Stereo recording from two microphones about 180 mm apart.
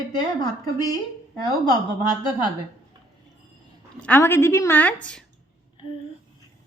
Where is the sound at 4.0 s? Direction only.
10° left (ahead or behind).